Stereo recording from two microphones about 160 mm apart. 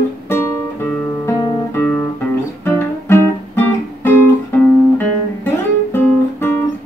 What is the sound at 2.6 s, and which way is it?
Music, 15° left (ahead or behind).